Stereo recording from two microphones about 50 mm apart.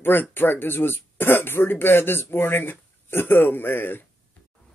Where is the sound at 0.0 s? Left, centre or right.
Left.